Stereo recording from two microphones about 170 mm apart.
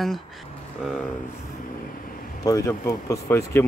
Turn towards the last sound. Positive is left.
turn(degrees=15)  # may be behind; listen again after turning